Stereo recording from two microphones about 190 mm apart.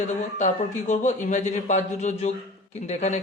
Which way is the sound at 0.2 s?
40° left (ahead or behind).